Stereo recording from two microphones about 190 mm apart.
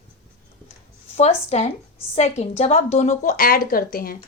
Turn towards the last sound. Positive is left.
turn(degrees=50)  # may be behind; listen again after turning